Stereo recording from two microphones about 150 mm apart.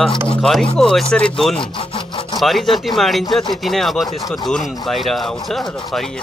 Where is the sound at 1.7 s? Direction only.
35° left (ahead or behind).